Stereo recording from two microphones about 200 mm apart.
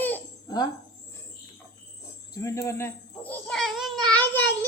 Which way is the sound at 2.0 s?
15° left (ahead or behind).